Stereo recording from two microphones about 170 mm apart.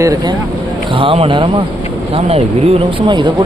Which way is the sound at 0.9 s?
30° right (ahead or behind).